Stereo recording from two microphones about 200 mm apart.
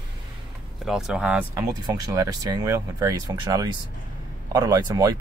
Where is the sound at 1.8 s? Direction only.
20° right (ahead or behind).